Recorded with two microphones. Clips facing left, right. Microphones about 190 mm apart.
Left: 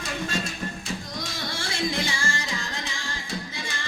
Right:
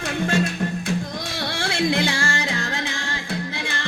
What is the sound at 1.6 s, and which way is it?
Music, 65° right (ahead or behind).